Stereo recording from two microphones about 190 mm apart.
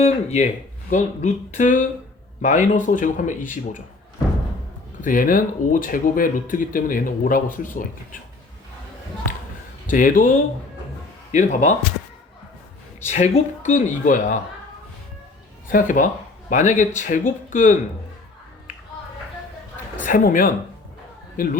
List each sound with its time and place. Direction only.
0.0 s speech: 35° left (ahead or behind)
4.9 s speech: 45° left (ahead or behind)
9.8 s speech: 45° left (ahead or behind)
13.1 s speech: 35° left (ahead or behind)
15.7 s speech: 45° left (ahead or behind)
20.0 s speech: 45° left (ahead or behind)